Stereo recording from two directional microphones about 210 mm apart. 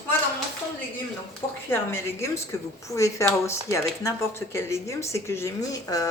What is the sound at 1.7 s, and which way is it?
Speech, 10° left (ahead or behind).